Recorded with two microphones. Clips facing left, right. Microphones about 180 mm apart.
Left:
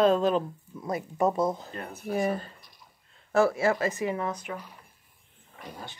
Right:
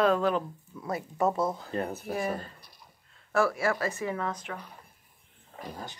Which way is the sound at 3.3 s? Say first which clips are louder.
Left 3 dB; 25° left (ahead or behind).